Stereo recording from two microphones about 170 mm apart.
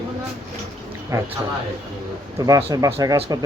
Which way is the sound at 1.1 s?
15° right (ahead or behind).